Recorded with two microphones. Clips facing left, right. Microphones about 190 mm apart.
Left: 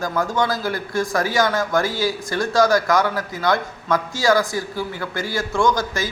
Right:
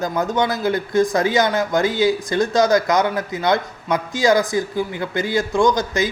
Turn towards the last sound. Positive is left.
turn(degrees=-20)  # may be behind; listen again after turning